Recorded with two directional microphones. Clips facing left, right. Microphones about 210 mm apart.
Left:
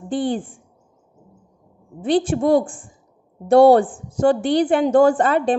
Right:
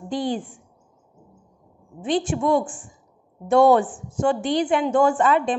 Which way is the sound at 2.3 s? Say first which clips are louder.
Left 4 dB; 35° left (ahead or behind).